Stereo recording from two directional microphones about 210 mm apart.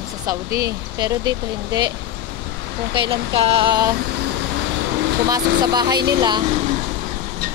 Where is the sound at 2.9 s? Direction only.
25° right (ahead or behind).